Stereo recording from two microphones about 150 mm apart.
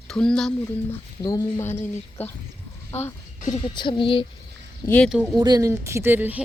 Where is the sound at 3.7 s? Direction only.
30° left (ahead or behind).